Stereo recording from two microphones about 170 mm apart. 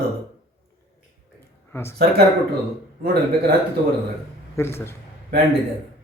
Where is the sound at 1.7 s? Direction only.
15° left (ahead or behind).